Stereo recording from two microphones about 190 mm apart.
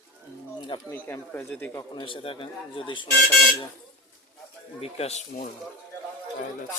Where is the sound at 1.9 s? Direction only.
25° left (ahead or behind).